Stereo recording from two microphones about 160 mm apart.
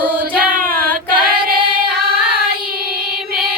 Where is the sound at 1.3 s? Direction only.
70° right (ahead or behind).